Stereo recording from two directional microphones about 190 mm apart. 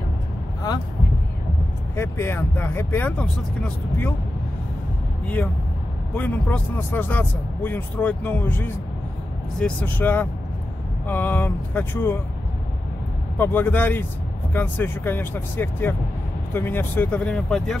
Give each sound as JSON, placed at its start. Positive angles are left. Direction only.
{"t": 2.0, "sound": "speech", "side_deg": 15}
{"t": 5.2, "sound": "speech", "side_deg": 5}
{"t": 13.4, "sound": "speech", "side_deg": 10}